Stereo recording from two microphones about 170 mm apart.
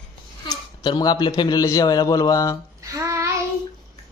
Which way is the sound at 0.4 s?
25° left (ahead or behind).